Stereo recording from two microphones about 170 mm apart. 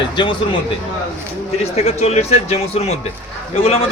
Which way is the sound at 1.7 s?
40° left (ahead or behind).